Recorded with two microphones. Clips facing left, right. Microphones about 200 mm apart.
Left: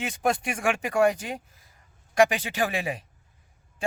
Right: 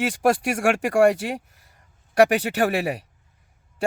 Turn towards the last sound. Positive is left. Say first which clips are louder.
# right 6 dB
turn(degrees=-70)  # may be behind; listen again after turning